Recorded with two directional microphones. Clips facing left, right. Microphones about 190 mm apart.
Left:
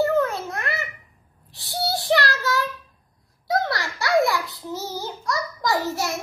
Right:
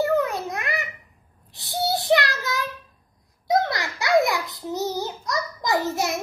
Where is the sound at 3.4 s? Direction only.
20° right (ahead or behind).